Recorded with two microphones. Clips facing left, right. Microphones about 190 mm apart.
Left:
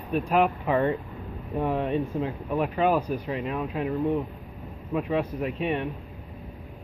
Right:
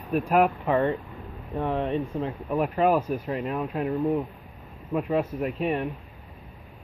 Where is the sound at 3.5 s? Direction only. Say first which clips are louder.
Right 1 dB; centre (ahead or behind).